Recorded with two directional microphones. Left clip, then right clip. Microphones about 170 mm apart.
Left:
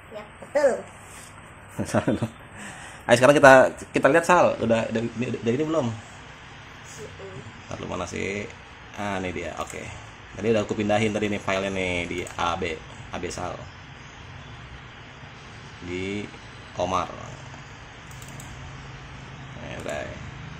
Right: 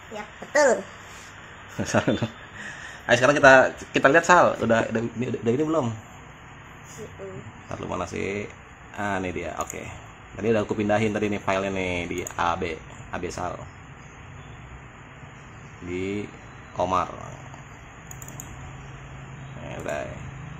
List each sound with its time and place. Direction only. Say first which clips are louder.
0.5 s speech: right 2 dB; 75° right (ahead or behind)
1.8 s speech: right 1 dB; 5° left (ahead or behind)
3.1 s speech: left 2 dB; 25° left (ahead or behind)
4.0 s speech: right 1 dB; 10° left (ahead or behind)
7.7 s speech: right 1 dB; centre (ahead or behind)
15.9 s speech: right 1 dB; centre (ahead or behind)
19.7 s speech: right 1 dB; centre (ahead or behind)